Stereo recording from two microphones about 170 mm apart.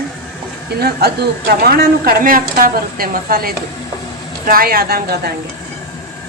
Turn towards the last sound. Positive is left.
turn(degrees=-65)  # may be behind; listen again after turning